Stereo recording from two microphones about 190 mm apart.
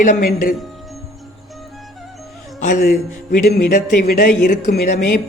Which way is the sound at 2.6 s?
40° left (ahead or behind).